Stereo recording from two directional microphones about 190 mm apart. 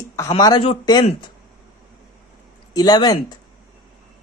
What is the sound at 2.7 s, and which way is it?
Speech, 20° left (ahead or behind).